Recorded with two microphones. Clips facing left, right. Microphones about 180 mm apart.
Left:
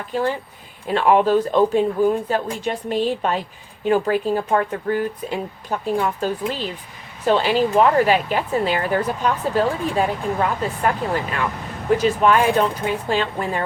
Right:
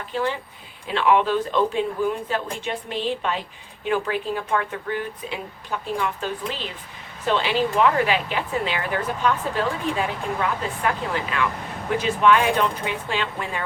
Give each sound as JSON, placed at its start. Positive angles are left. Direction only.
{"t": 0.1, "sound": "speech", "side_deg": 40}